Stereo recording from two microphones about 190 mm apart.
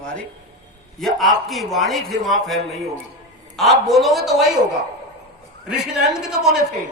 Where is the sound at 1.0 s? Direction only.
Centre (ahead or behind).